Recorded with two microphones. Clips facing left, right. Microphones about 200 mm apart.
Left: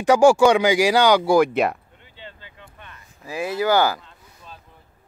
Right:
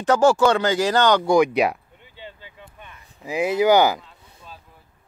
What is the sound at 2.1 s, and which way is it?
Vehicle, 10° right (ahead or behind).